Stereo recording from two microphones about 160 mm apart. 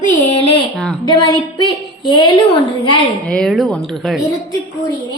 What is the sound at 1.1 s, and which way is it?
Speech, 30° left (ahead or behind).